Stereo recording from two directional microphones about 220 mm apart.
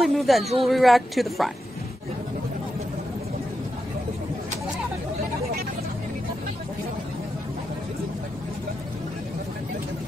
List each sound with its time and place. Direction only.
0.0 s a woman's voice: centre (ahead or behind)